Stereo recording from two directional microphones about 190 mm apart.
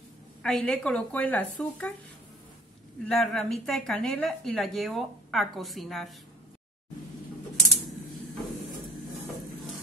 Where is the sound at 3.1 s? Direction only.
5° left (ahead or behind).